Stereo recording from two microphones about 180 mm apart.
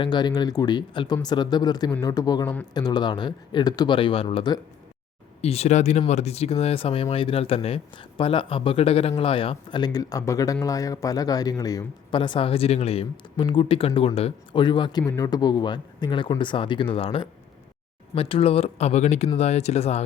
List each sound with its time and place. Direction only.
0.0 s speech: 25° left (ahead or behind)